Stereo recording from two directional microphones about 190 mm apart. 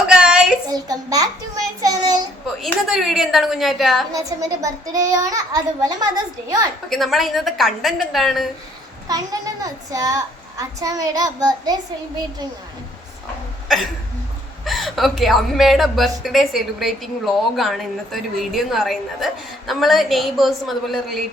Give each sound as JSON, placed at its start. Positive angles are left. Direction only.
{"t": 0.1, "sound": "child singing", "side_deg": -5}
{"t": 0.7, "sound": "child singing", "side_deg": -20}
{"t": 2.6, "sound": "a woman's voice", "side_deg": 0}
{"t": 4.1, "sound": "a child's voice", "side_deg": -20}
{"t": 6.9, "sound": "a woman's voice", "side_deg": 0}
{"t": 9.0, "sound": "a child's voice", "side_deg": -20}
{"t": 14.6, "sound": "a woman's voice", "side_deg": 0}